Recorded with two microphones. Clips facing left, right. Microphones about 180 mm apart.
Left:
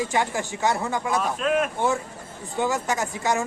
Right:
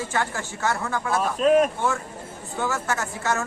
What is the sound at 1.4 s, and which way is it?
Speech, 35° right (ahead or behind).